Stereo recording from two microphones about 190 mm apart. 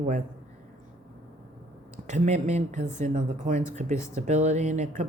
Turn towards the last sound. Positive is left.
turn(degrees=-40)  # may be behind; listen again after turning